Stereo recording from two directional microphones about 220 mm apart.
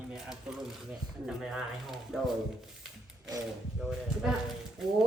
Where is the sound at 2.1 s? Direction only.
5° right (ahead or behind).